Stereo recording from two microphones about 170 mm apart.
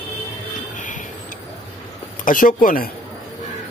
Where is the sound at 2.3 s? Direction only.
50° left (ahead or behind).